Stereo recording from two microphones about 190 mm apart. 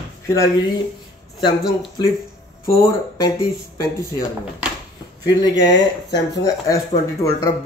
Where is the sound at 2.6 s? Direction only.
15° left (ahead or behind).